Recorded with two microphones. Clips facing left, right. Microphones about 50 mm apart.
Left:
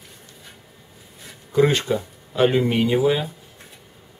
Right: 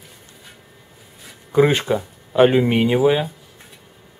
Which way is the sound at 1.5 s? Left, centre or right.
Centre.